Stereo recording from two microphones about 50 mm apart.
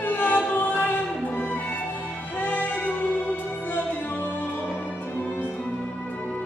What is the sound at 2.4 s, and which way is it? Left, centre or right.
Music, left.